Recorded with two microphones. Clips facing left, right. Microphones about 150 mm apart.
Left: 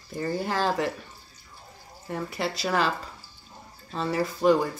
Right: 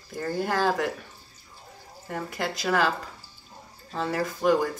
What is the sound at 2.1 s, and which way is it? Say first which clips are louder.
Speech: left 1 dB; centre (ahead or behind).